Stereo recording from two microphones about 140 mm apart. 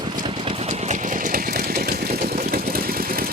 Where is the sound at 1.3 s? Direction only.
90° right.